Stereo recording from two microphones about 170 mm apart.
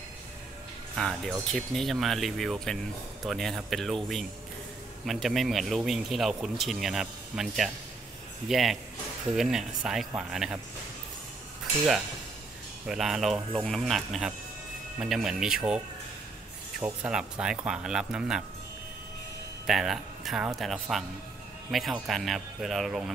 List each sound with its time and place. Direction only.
0.9 s speech: 5° left (ahead or behind)
12.8 s speech: centre (ahead or behind)
16.8 s speech: 5° right (ahead or behind)
19.6 s speech: centre (ahead or behind)